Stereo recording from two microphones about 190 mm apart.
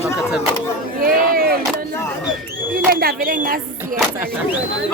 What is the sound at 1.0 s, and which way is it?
Speech, 50° right (ahead or behind).